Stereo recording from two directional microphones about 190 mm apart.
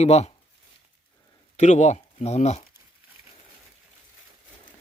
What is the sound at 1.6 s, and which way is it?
Speech, 40° left (ahead or behind).